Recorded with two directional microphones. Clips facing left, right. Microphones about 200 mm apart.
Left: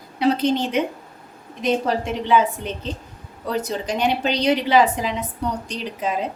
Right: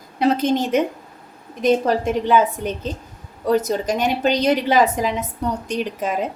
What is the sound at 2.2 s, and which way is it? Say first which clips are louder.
A woman's voice: left 2 dB; 45° right (ahead or behind).